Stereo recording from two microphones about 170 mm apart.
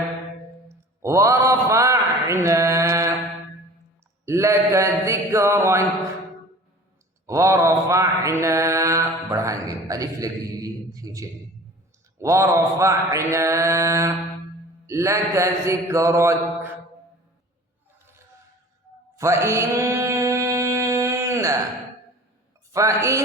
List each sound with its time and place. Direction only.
0.7 s a sound: 15° right (ahead or behind)
4.3 s mantra: 15° right (ahead or behind)
7.3 s mantra: 20° right (ahead or behind)
19.1 s mantra: 15° right (ahead or behind)
22.7 s mantra: 20° right (ahead or behind)